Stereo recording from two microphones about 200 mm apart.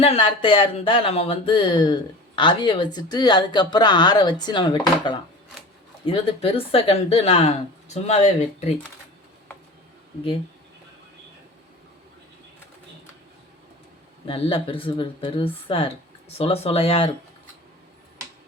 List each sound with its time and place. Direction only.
0.0 s speech: 30° left (ahead or behind)
14.3 s speech: 25° left (ahead or behind)